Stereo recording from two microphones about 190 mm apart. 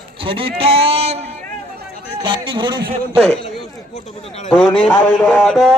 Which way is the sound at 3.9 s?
40° left (ahead or behind).